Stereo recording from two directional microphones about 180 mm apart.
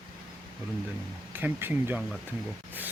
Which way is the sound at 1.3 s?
10° right (ahead or behind).